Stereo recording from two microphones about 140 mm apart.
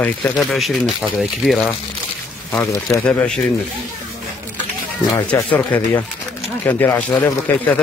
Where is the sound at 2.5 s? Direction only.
20° left (ahead or behind).